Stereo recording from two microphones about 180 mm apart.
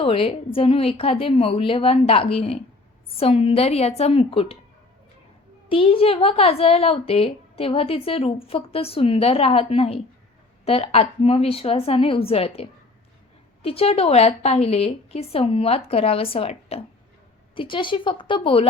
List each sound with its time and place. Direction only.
0.0 s a woman's voice: 30° left (ahead or behind)
5.6 s a woman's voice: 30° left (ahead or behind)